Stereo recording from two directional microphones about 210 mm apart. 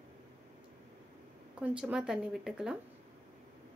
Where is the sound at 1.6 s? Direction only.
5° right (ahead or behind).